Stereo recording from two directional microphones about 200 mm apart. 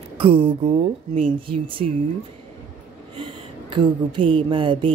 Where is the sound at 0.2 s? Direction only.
30° right (ahead or behind).